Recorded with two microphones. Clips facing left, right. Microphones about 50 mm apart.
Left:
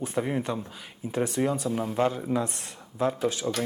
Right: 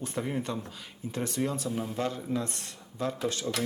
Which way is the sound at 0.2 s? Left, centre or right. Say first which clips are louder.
Left 4 dB; centre.